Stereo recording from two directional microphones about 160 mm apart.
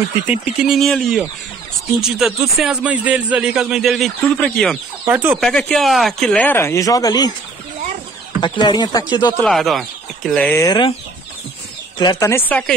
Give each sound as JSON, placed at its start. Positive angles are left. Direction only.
{"t": 0.3, "sound": "speech", "side_deg": -5}
{"t": 5.0, "sound": "speech", "side_deg": -10}
{"t": 5.4, "sound": "speech", "side_deg": 5}
{"t": 8.4, "sound": "speech", "side_deg": 30}
{"t": 9.4, "sound": "speech", "side_deg": 0}
{"t": 10.6, "sound": "speech", "side_deg": 25}
{"t": 12.0, "sound": "speech", "side_deg": 25}